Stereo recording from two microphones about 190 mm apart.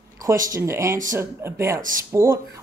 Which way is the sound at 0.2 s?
15° right (ahead or behind).